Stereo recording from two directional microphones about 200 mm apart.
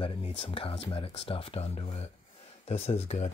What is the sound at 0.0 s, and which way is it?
Speech, 25° left (ahead or behind).